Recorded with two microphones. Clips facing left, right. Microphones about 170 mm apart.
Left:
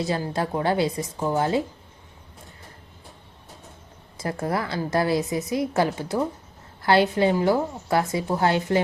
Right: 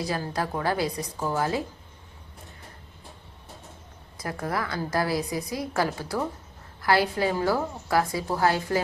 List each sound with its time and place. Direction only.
0.0 s a woman's voice: 25° left (ahead or behind)
4.2 s a woman's voice: 25° left (ahead or behind)